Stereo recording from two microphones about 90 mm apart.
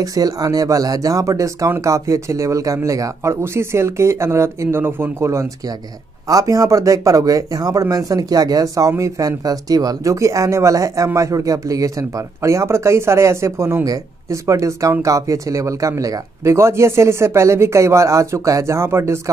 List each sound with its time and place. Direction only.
0.0 s speech: 40° right (ahead or behind)